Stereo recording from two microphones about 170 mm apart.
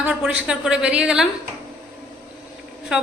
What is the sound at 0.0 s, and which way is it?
A woman's voice, 5° right (ahead or behind).